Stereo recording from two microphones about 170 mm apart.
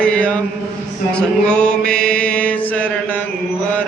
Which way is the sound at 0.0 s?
5° left (ahead or behind).